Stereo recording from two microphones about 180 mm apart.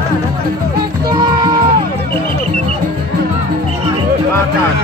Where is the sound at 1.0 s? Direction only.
25° right (ahead or behind).